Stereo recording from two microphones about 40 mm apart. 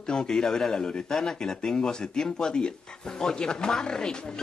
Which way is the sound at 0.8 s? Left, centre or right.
Left.